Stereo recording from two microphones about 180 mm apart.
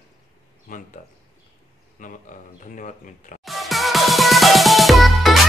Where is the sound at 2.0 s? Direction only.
45° left (ahead or behind).